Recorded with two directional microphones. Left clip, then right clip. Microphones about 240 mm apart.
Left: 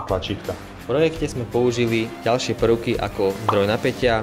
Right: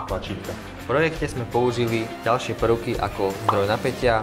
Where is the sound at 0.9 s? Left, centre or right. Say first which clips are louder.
Left 2 dB; left.